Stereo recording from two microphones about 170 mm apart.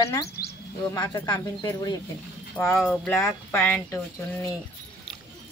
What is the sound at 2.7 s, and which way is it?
Speech, 5° left (ahead or behind).